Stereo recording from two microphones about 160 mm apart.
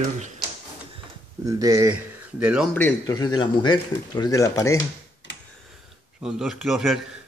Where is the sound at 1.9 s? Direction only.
10° right (ahead or behind).